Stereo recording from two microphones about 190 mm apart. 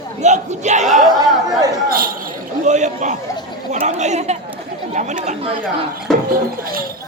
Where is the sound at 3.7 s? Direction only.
35° right (ahead or behind).